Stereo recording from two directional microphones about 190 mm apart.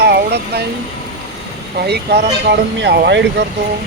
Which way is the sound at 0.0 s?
60° right (ahead or behind).